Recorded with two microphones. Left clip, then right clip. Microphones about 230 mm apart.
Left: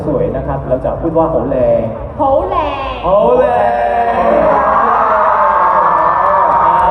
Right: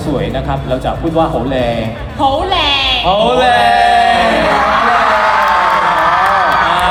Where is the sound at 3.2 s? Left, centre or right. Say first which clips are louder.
Right 2 dB; right.